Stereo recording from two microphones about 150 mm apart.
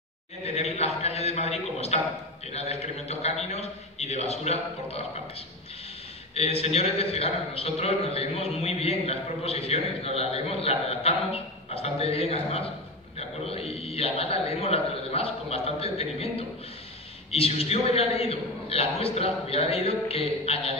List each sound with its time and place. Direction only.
0.4 s a man's voice: 45° left (ahead or behind)
6.3 s a man's voice: 40° left (ahead or behind)